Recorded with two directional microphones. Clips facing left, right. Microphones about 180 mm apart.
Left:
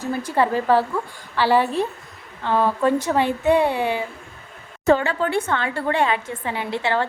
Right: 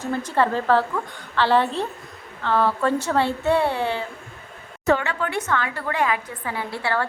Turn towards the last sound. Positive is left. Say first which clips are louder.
# left 3 dB
turn(degrees=20)  # may be behind; listen again after turning